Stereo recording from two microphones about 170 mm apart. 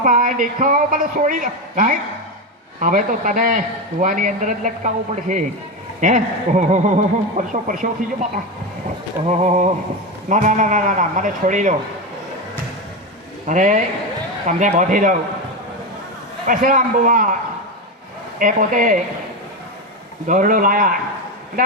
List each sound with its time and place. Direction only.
0.0 s speech: 50° right (ahead or behind)
9.2 s a sound: 40° right (ahead or behind)
10.2 s speech: 45° right (ahead or behind)
13.5 s speech: 45° right (ahead or behind)
16.5 s speech: 55° right (ahead or behind)
18.3 s speech: 50° right (ahead or behind)
20.2 s speech: 50° right (ahead or behind)